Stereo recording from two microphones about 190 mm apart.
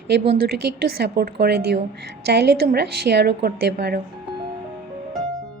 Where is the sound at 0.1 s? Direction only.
60° right (ahead or behind).